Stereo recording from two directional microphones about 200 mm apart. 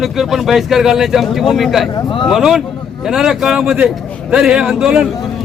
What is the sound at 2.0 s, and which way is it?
Speech, 25° left (ahead or behind).